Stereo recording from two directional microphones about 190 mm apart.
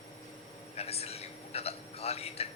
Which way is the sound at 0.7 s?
35° left (ahead or behind).